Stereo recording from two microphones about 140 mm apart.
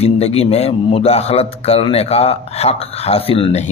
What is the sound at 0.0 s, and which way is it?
A man's voice, 50° left (ahead or behind).